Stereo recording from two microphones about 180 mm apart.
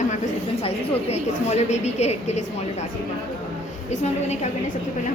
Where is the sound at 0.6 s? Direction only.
35° left (ahead or behind).